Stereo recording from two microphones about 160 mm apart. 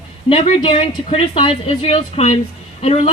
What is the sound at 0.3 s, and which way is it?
A woman's voice, 35° left (ahead or behind).